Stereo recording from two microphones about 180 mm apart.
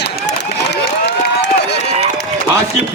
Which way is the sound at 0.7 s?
70° left (ahead or behind).